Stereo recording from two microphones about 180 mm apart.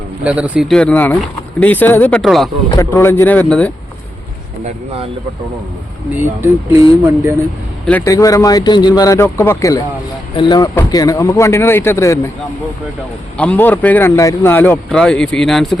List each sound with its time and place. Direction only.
0.3 s a man's voice: 10° right (ahead or behind)
2.7 s a man's voice: 15° left (ahead or behind)
6.1 s speech: 15° right (ahead or behind)
7.9 s a man's voice: 15° left (ahead or behind)
13.3 s a man's voice: 5° left (ahead or behind)